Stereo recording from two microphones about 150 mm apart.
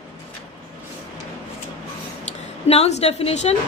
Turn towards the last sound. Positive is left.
turn(degrees=45)  # may be behind; listen again after turning